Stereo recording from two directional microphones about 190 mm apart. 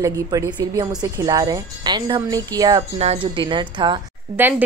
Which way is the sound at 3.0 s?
30° right (ahead or behind).